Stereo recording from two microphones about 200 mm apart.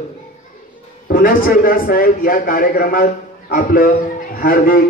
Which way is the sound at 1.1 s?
45° left (ahead or behind).